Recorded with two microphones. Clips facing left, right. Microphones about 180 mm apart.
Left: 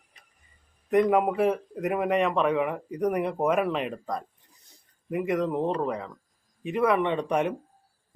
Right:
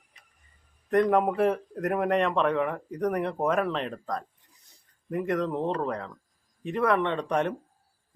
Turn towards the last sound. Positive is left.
turn(degrees=10)  # may be behind; listen again after turning